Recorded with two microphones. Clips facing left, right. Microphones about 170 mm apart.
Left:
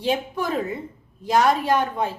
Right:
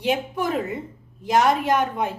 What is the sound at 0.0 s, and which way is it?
A woman's voice, 15° right (ahead or behind).